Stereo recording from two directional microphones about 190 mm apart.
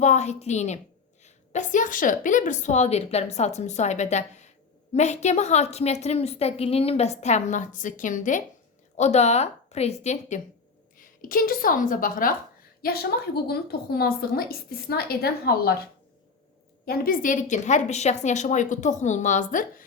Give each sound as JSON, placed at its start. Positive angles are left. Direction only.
{"t": 0.0, "sound": "a woman's voice", "side_deg": 35}
{"t": 16.8, "sound": "a woman's voice", "side_deg": 50}